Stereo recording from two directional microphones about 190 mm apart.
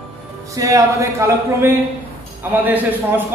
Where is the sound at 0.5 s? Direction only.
15° right (ahead or behind).